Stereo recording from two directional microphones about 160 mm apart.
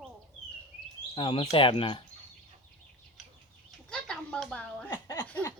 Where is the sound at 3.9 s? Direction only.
5° left (ahead or behind).